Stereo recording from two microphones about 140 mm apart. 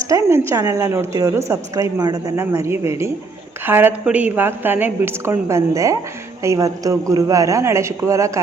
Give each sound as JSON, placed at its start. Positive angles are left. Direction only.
{"t": 0.1, "sound": "a woman's voice", "side_deg": -20}